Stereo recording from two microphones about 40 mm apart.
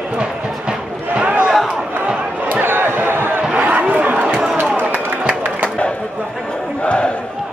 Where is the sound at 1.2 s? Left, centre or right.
Right.